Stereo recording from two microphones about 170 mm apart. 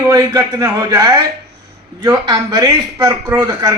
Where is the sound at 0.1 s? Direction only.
20° right (ahead or behind).